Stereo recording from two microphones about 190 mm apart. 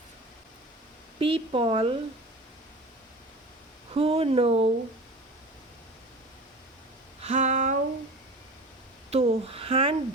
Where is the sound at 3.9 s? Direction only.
30° right (ahead or behind).